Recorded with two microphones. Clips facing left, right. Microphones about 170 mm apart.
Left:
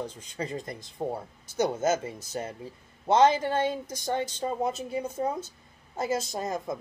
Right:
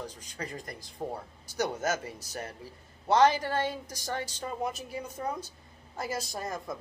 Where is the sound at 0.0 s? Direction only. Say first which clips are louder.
Left 5 dB; 25° left (ahead or behind).